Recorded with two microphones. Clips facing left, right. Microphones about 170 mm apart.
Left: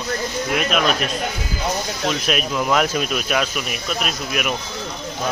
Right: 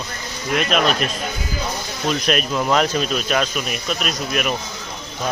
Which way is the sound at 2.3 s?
5° left (ahead or behind).